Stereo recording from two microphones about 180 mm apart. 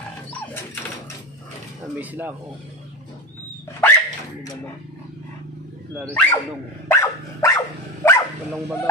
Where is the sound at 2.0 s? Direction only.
10° right (ahead or behind).